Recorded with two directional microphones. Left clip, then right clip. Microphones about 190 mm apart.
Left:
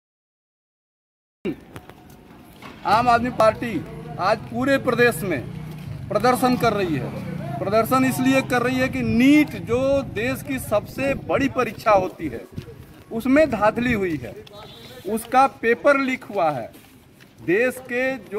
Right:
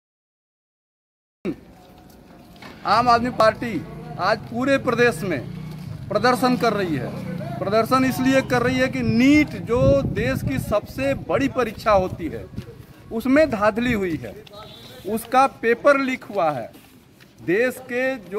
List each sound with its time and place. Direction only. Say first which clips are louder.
2.8 s speech: even; centre (ahead or behind)
6.7 s speech: even; 15° right (ahead or behind)
7.6 s speech: even; centre (ahead or behind)
17.5 s speech: even; 10° right (ahead or behind)
17.9 s speech: right 1 dB; centre (ahead or behind)